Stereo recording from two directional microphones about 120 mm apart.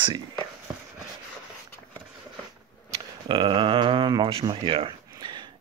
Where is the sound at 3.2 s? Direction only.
45° right (ahead or behind).